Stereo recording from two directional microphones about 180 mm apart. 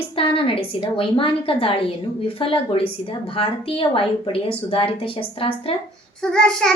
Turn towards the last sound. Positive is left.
turn(degrees=5)  # may be behind; listen again after turning